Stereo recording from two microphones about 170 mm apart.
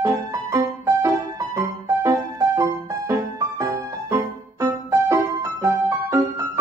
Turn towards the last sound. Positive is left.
turn(degrees=-15)  # may be behind; listen again after turning